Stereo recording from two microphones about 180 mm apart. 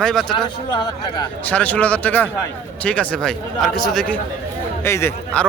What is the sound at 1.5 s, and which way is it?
A man's voice, 10° left (ahead or behind).